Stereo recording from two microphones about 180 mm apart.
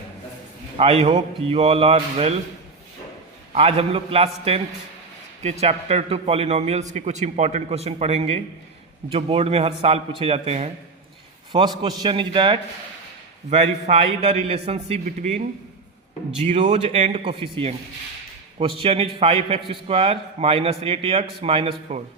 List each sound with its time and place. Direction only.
0.8 s a man's voice: 30° right (ahead or behind)
3.5 s a man's voice: 30° right (ahead or behind)
11.5 s a man's voice: 25° right (ahead or behind); by 15.4 s 40° right (ahead or behind)
16.4 s a man's voice: 40° right (ahead or behind)